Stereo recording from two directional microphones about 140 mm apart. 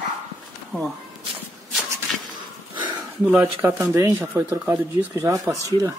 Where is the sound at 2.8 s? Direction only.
35° right (ahead or behind).